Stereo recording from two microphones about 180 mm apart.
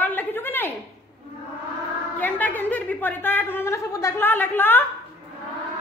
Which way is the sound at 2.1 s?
10° left (ahead or behind).